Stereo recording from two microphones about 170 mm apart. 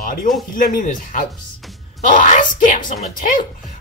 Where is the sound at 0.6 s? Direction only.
55° left (ahead or behind).